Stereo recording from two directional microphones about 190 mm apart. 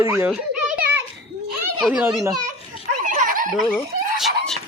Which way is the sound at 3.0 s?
45° right (ahead or behind).